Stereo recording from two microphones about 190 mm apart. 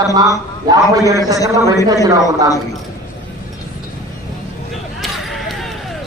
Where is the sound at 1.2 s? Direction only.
20° left (ahead or behind).